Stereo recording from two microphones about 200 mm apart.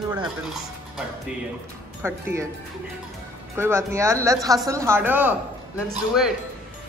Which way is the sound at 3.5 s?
10° right (ahead or behind).